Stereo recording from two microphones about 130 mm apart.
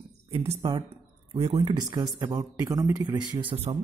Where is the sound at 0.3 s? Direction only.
55° right (ahead or behind).